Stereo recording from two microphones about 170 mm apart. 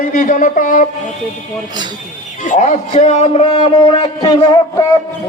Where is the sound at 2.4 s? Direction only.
45° left (ahead or behind).